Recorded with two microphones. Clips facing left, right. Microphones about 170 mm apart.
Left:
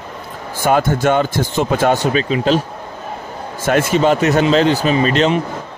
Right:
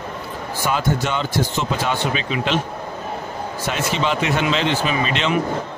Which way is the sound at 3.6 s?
50° left (ahead or behind).